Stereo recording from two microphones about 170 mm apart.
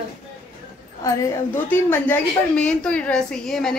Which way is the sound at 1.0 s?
15° left (ahead or behind).